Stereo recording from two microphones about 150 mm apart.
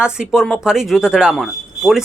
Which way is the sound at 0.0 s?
5° right (ahead or behind).